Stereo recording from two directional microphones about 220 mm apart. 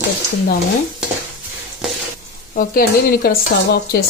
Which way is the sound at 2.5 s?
40° left (ahead or behind).